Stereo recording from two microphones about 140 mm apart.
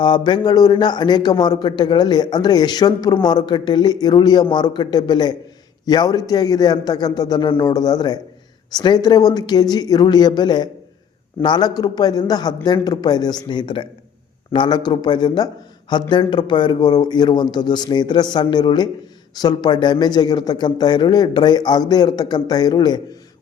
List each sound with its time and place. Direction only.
0.0 s a man's voice: 35° left (ahead or behind)